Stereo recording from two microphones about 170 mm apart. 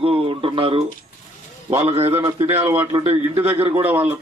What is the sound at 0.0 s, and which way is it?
Speech, 35° right (ahead or behind).